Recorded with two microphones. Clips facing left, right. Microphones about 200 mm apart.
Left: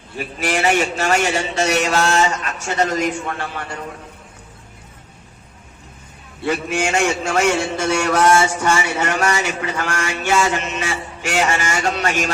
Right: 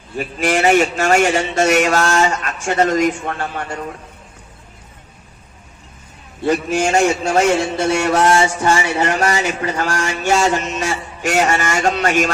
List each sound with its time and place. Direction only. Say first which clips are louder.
0.2 s speech: right 4 dB; 45° right (ahead or behind)
6.4 s a man's voice: right 4 dB; 40° right (ahead or behind)